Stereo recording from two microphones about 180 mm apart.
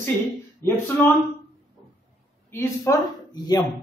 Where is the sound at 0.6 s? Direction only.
10° left (ahead or behind).